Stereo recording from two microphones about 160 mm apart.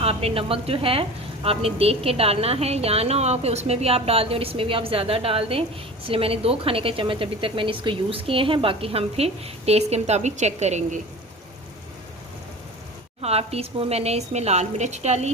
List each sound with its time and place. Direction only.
0.0 s speech: 40° right (ahead or behind)
13.2 s a woman's voice: 40° right (ahead or behind)